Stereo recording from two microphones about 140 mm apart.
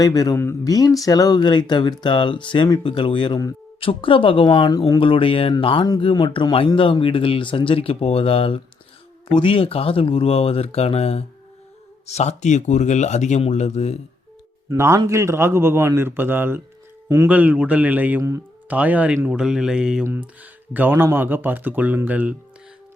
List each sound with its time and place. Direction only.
0.0 s speech: 25° left (ahead or behind); by 14.0 s 50° left (ahead or behind)
14.7 s a man's voice: 20° right (ahead or behind)